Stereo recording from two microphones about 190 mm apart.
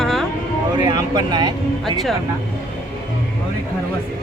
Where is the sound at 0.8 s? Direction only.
20° right (ahead or behind).